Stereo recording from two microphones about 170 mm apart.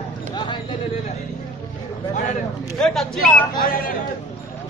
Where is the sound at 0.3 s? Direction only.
25° left (ahead or behind).